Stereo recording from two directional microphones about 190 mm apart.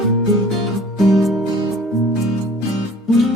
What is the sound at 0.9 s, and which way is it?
Music, centre (ahead or behind).